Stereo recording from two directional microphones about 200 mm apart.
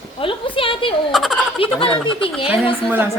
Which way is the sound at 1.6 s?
25° left (ahead or behind).